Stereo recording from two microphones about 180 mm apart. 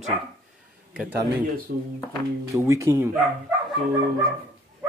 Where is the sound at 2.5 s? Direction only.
15° right (ahead or behind).